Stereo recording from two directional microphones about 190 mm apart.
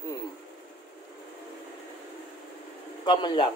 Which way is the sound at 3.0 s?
25° left (ahead or behind).